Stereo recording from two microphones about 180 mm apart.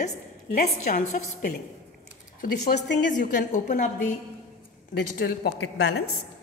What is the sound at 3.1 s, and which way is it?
Speech, 45° left (ahead or behind).